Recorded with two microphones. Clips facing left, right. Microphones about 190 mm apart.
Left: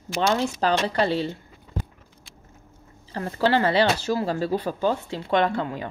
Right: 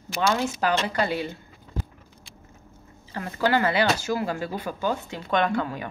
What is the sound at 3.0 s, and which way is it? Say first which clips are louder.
Speech: left 2 dB; 35° left (ahead or behind).